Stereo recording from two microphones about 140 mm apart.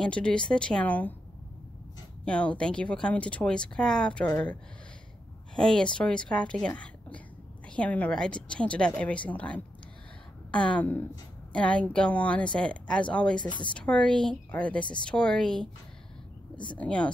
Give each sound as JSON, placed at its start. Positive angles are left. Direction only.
{"t": 0.0, "sound": "speech", "side_deg": 5}
{"t": 2.2, "sound": "speech", "side_deg": 10}
{"t": 5.6, "sound": "speech", "side_deg": 5}
{"t": 16.7, "sound": "speech", "side_deg": 10}